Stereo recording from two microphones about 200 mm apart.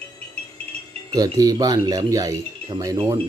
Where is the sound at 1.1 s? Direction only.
20° right (ahead or behind).